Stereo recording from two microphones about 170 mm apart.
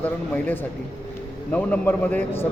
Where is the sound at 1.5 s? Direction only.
10° left (ahead or behind).